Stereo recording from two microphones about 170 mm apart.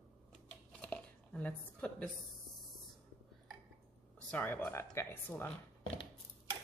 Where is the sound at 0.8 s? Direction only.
10° left (ahead or behind).